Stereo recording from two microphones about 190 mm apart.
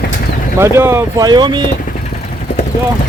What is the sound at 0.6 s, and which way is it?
Speech, 15° right (ahead or behind).